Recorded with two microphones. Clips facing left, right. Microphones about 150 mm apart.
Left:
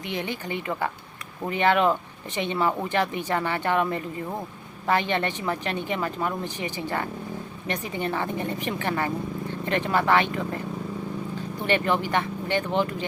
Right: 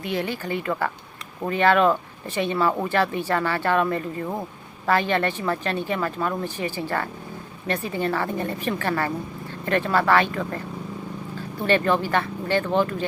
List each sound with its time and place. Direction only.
0.0 s a woman's voice: 20° left (ahead or behind)
11.6 s speech: 15° left (ahead or behind)